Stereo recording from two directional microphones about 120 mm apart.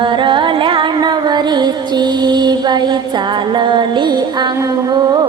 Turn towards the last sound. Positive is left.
turn(degrees=-35)  # may be behind; listen again after turning